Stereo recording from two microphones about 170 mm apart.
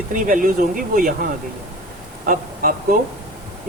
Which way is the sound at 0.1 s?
50° right (ahead or behind).